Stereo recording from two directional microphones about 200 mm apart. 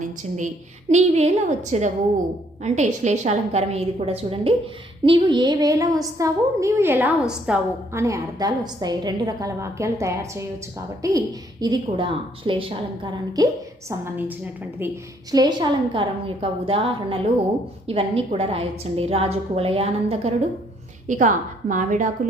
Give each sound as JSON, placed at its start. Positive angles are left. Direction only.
{"t": 0.0, "sound": "a woman's voice", "side_deg": -40}
{"t": 14.0, "sound": "a woman's voice", "side_deg": -10}
{"t": 15.3, "sound": "a woman's voice", "side_deg": -20}